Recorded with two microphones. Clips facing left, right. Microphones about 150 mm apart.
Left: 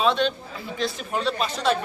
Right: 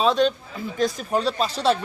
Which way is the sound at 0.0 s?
40° right (ahead or behind).